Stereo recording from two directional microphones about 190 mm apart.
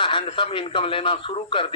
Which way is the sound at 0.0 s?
25° left (ahead or behind).